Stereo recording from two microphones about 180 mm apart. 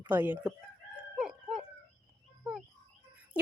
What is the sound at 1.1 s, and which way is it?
Chicken, 5° right (ahead or behind).